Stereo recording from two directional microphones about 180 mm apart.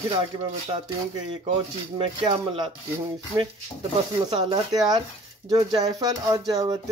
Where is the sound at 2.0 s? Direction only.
30° right (ahead or behind).